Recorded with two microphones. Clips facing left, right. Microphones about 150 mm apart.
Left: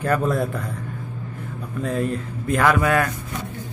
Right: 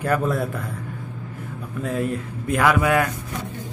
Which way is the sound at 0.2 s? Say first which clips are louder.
Left 1 dB; centre (ahead or behind).